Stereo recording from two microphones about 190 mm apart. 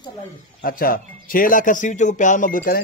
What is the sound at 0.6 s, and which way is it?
Speech, 50° left (ahead or behind).